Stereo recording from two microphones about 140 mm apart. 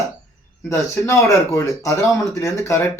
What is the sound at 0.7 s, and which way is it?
Speech, 20° left (ahead or behind).